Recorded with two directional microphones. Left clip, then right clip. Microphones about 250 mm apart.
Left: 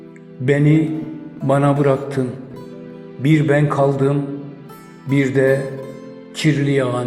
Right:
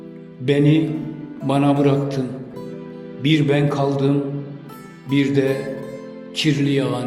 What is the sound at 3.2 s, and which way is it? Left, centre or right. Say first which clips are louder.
A man's voice: left 2 dB; centre.